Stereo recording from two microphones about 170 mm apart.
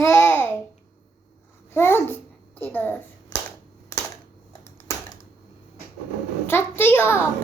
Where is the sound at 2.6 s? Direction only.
10° left (ahead or behind).